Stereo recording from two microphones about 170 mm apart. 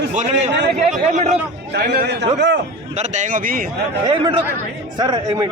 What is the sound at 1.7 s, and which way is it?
Speech, 65° right (ahead or behind).